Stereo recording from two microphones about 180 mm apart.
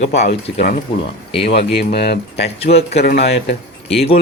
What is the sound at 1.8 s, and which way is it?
Speech, 65° left (ahead or behind).